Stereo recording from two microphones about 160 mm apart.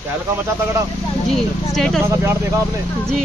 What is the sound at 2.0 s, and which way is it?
Speech, 15° right (ahead or behind).